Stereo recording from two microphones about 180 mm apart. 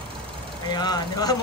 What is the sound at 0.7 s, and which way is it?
Speech, 20° left (ahead or behind).